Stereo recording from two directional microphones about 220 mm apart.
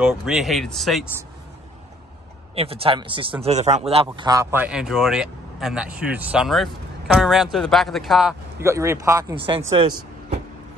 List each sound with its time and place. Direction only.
0.0 s a man's voice: centre (ahead or behind)
2.5 s a man's voice: 25° right (ahead or behind)